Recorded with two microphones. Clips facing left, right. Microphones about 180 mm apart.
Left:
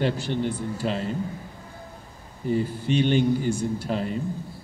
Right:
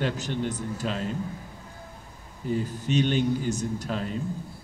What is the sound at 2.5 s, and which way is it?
A man's voice, 10° left (ahead or behind).